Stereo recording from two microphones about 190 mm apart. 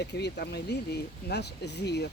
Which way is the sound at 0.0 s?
60° left (ahead or behind).